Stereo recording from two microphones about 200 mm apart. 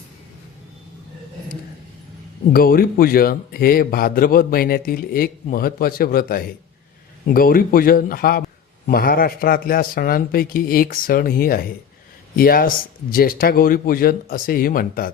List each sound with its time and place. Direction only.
2.5 s a man's voice: 45° left (ahead or behind)